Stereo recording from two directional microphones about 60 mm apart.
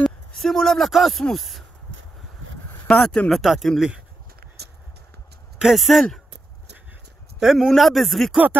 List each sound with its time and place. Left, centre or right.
0.4 s speech: centre
2.9 s speech: centre
3.3 s speech: centre
5.6 s speech: centre
7.3 s speech: centre